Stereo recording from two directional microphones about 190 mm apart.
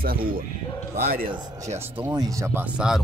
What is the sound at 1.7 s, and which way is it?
Speech, 15° right (ahead or behind).